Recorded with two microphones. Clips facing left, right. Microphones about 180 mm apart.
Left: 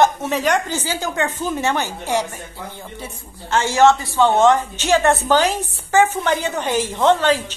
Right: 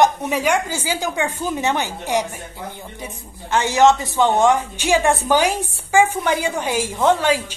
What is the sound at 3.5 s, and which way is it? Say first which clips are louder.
A woman's voice: even; 15° right (ahead or behind).